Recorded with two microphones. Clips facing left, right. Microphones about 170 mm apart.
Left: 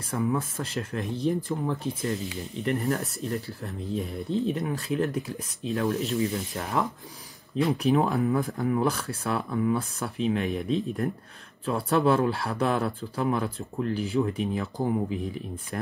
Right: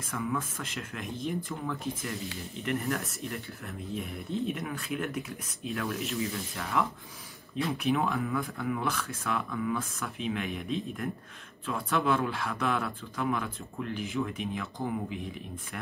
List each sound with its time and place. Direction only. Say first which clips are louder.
0.0 s speech: left 5 dB; 35° left (ahead or behind)